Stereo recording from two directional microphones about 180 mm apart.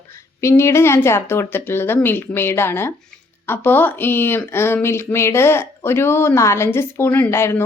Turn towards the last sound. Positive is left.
turn(degrees=15)  # may be behind; listen again after turning